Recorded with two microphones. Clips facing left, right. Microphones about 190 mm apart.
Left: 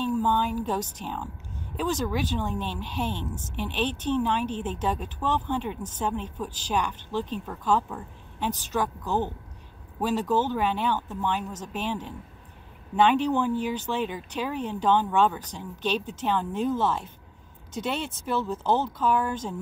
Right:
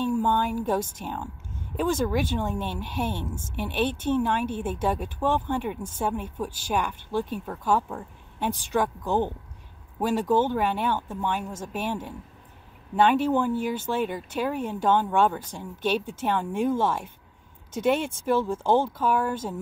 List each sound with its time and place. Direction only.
0.0 s a sound: 15° right (ahead or behind)
1.0 s speech: 10° right (ahead or behind)
1.8 s speech: 50° right (ahead or behind)
2.5 s speech: 10° right (ahead or behind)
13.1 s speech: 10° right (ahead or behind)
13.6 s speech: 50° right (ahead or behind)
14.3 s speech: 10° right (ahead or behind)